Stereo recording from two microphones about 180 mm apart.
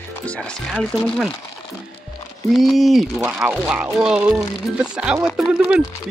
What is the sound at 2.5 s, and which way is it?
Speech, centre (ahead or behind).